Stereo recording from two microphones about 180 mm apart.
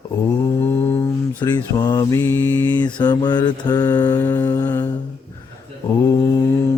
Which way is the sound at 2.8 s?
25° left (ahead or behind).